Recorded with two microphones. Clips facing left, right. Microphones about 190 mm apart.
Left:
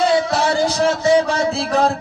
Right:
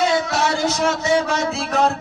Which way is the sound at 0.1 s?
35° left (ahead or behind).